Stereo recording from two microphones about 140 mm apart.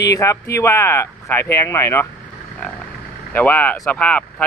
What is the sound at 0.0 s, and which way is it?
Speech, 25° left (ahead or behind).